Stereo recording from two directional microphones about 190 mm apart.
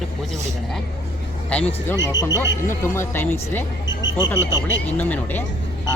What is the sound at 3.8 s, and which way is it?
Speech, 75° left (ahead or behind).